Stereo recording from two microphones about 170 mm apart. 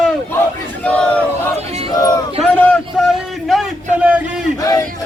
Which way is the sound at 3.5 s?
5° right (ahead or behind).